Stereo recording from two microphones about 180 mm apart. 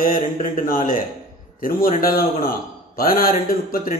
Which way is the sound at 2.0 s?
55° left (ahead or behind).